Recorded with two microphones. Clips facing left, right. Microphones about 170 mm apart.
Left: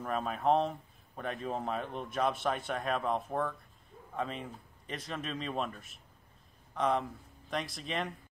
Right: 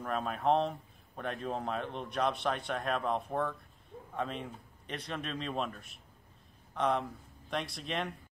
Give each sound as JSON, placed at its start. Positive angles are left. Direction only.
{"t": 0.0, "sound": "speech", "side_deg": 0}